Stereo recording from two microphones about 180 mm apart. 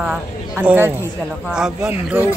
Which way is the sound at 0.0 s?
5° right (ahead or behind).